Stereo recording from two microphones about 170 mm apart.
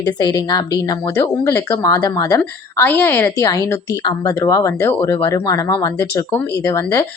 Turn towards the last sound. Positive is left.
turn(degrees=20)  # may be behind; listen again after turning